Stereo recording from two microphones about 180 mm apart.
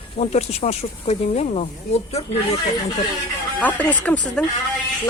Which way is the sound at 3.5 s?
10° left (ahead or behind).